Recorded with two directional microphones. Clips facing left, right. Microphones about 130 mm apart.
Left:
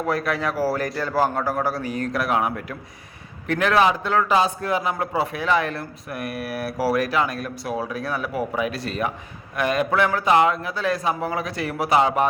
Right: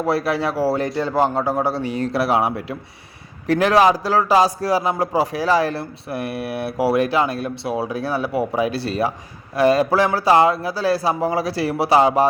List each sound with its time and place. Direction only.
0.0 s a man's voice: 30° right (ahead or behind)